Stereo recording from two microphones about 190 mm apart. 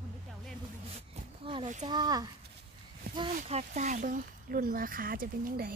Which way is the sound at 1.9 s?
20° right (ahead or behind).